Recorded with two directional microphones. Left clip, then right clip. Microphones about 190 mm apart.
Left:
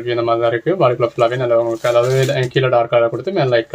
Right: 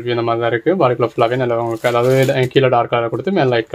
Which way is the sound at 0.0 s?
40° right (ahead or behind).